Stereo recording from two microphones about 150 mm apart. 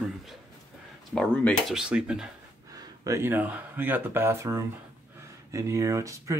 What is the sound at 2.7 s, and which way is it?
Speech, 20° right (ahead or behind).